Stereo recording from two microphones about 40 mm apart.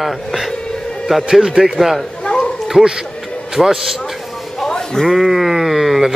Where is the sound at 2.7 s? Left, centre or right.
Centre.